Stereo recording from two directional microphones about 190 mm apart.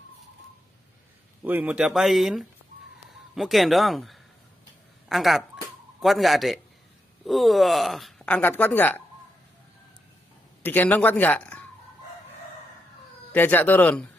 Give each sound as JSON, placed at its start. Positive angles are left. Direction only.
{"t": 1.4, "sound": "speech", "side_deg": -10}
{"t": 10.6, "sound": "speech", "side_deg": 10}
{"t": 13.3, "sound": "speech", "side_deg": 10}